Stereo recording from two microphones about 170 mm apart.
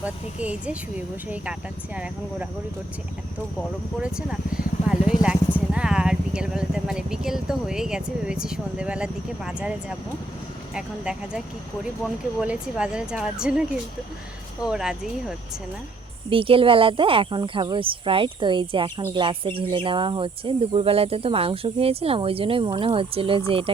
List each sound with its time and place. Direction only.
0.0 s speech: 10° right (ahead or behind)
4.0 s speech: 5° right (ahead or behind)
10.8 s speech: 5° right (ahead or behind)
16.3 s speech: 30° right (ahead or behind)